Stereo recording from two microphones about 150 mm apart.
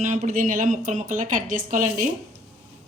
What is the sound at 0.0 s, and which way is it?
A woman's voice, 55° right (ahead or behind).